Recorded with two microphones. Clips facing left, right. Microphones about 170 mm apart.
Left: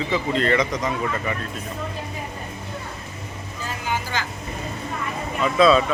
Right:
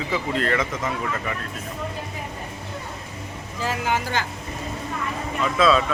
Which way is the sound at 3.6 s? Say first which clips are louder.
Right 4 dB; 80° right.